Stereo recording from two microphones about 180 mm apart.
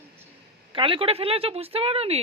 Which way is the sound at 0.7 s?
30° right (ahead or behind).